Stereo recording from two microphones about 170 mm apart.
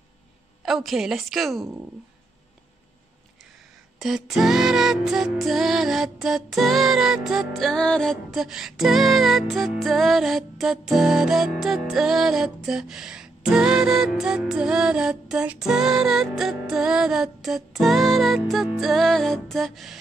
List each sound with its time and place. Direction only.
0.6 s music: centre (ahead or behind)
4.0 s music: centre (ahead or behind)